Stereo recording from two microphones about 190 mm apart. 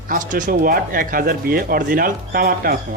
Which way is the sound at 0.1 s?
45° right (ahead or behind).